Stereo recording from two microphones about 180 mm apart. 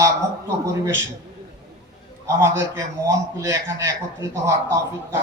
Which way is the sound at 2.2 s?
15° right (ahead or behind).